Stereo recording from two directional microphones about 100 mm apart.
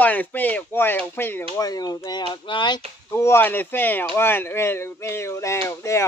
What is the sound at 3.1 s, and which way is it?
Speech, 25° left (ahead or behind).